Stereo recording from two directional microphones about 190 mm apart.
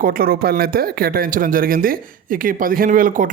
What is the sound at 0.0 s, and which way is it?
Speech, 50° right (ahead or behind).